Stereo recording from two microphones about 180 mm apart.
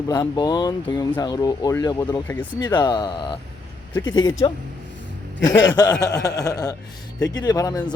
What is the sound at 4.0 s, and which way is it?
Speech, 90° left.